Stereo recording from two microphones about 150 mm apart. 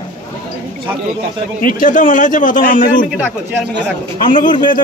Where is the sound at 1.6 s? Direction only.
60° left (ahead or behind).